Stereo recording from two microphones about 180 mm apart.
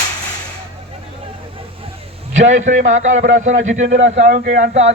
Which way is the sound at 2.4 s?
40° right (ahead or behind).